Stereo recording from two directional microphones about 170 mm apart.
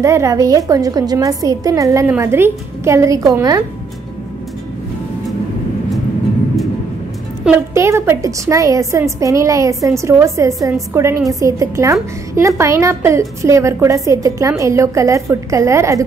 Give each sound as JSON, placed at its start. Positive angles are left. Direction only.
{"t": 0.0, "sound": "a woman's voice", "side_deg": -15}
{"t": 7.4, "sound": "a woman's voice", "side_deg": -15}